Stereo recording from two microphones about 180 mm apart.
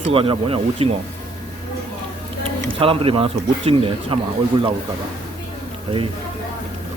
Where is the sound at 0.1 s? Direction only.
30° right (ahead or behind).